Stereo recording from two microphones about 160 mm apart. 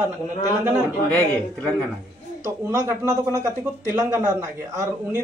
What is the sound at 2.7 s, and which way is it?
Speech, 20° right (ahead or behind).